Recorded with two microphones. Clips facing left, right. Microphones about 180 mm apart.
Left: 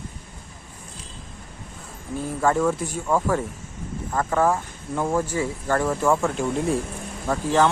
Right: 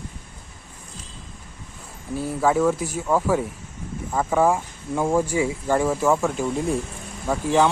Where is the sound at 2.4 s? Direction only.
5° right (ahead or behind).